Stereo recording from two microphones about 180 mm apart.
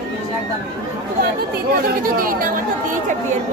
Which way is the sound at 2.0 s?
50° right (ahead or behind).